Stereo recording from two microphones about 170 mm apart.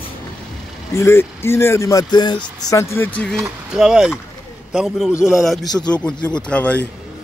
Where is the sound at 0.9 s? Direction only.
15° left (ahead or behind).